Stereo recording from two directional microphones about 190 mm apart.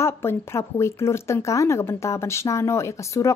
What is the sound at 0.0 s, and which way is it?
Speech, 15° left (ahead or behind).